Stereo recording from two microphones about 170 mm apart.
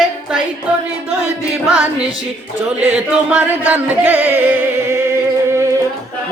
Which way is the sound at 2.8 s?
10° right (ahead or behind).